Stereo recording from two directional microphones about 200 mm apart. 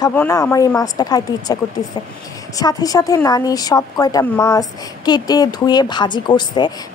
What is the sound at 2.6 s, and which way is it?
A woman's voice, 20° left (ahead or behind).